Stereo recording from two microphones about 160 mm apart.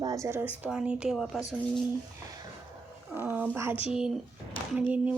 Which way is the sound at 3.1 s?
10° right (ahead or behind).